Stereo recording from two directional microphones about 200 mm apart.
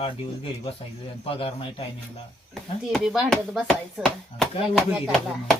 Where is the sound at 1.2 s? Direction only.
30° left (ahead or behind).